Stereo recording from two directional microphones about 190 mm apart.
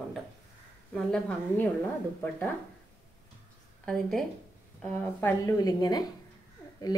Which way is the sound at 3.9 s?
Centre (ahead or behind).